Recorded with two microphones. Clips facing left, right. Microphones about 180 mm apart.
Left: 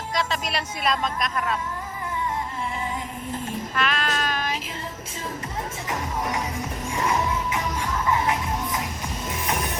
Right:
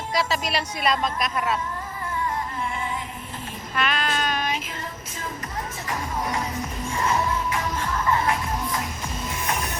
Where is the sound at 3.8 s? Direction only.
Centre (ahead or behind).